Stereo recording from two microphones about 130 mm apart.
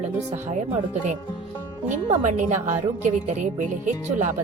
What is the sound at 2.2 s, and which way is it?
Speech, 75° right (ahead or behind).